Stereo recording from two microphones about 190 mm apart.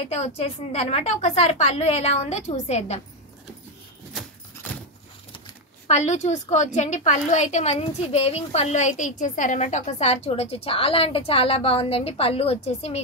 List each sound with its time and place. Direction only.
0.1 s a woman's voice: 35° left (ahead or behind)
5.9 s a woman's voice: 35° left (ahead or behind)